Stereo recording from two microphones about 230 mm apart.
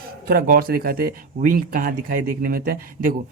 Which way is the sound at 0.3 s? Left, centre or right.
Right.